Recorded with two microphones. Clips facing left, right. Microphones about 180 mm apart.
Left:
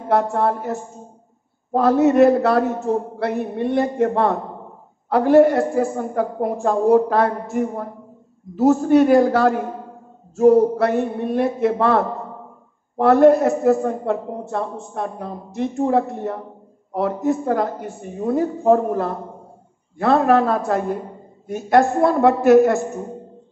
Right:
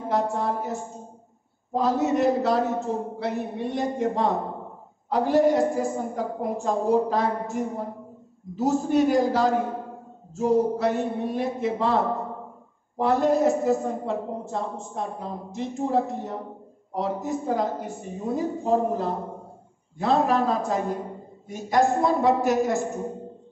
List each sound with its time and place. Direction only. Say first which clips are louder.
0.1 s a woman's voice: left 7 dB; 60° left (ahead or behind)